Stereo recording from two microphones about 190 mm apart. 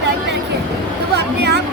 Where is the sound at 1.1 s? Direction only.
60° right (ahead or behind).